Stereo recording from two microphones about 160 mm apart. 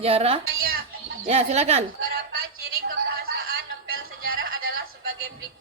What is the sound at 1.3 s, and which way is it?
Speech, 40° right (ahead or behind).